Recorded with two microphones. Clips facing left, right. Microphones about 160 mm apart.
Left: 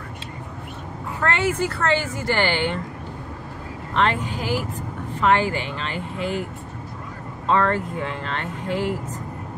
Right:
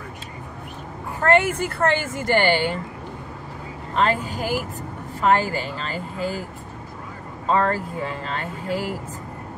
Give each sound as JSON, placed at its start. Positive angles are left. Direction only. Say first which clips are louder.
{"t": 1.2, "sound": "speech", "louder": "right 3 dB", "side_deg": -50}
{"t": 3.9, "sound": "speech", "louder": "even", "side_deg": -40}
{"t": 7.4, "sound": "speech", "louder": "left 1 dB", "side_deg": -35}
{"t": 8.6, "sound": "a woman's voice", "louder": "left 2 dB", "side_deg": -5}